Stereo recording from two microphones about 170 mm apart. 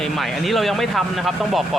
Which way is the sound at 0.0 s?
Centre (ahead or behind).